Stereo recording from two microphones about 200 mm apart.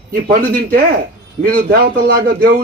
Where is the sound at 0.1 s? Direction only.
50° right (ahead or behind).